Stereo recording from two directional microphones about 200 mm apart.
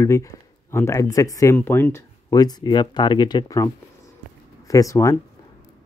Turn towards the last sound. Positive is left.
turn(degrees=15)  # may be behind; listen again after turning